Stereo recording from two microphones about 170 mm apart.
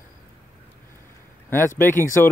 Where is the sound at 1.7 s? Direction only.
15° left (ahead or behind).